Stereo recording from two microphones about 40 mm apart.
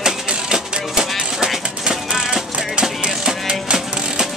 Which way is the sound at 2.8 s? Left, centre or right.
Right.